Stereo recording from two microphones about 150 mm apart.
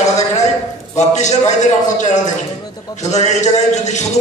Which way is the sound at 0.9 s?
50° left (ahead or behind).